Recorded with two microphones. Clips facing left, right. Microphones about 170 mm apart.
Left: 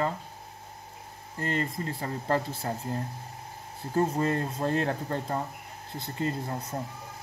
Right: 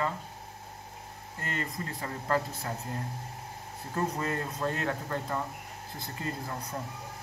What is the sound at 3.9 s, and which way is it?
Speech, 30° left (ahead or behind).